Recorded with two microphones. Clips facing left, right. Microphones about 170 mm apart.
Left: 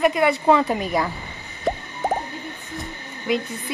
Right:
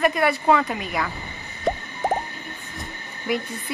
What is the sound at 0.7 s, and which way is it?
Speech, 40° left (ahead or behind).